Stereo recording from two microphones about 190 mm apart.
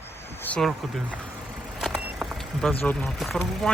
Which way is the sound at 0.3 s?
10° left (ahead or behind).